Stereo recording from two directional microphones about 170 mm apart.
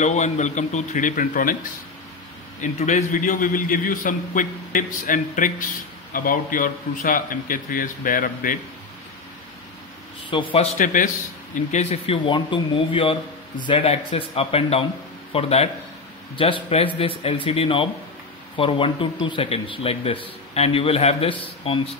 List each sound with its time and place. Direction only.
0.0 s a man's voice: 45° left (ahead or behind)
2.6 s a man's voice: 40° left (ahead or behind)
10.3 s speech: 30° left (ahead or behind)
10.8 s a man's voice: 50° left (ahead or behind)
11.7 s speech: 40° left (ahead or behind)